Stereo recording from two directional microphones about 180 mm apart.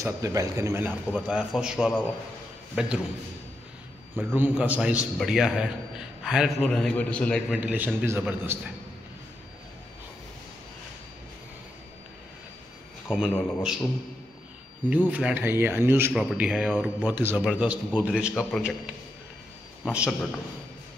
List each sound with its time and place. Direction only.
0.0 s a man's voice: 15° right (ahead or behind)
4.1 s a man's voice: 10° right (ahead or behind)
13.1 s a man's voice: 5° right (ahead or behind)
14.9 s a man's voice: 10° right (ahead or behind)
19.9 s a man's voice: 5° right (ahead or behind)